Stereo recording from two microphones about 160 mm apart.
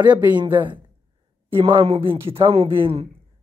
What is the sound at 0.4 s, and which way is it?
Speech, 30° right (ahead or behind).